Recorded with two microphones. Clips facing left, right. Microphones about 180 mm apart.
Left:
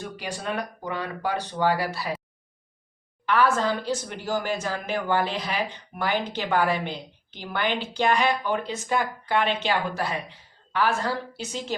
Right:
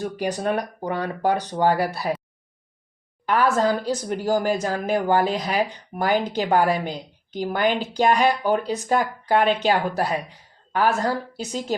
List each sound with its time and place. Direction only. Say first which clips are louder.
0.2 s speech: right 6 dB; 45° right (ahead or behind)
3.2 s a woman's voice: right 3 dB; 40° right (ahead or behind)